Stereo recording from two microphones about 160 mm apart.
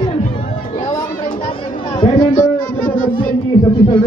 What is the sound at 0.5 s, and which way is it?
Music, 30° left (ahead or behind).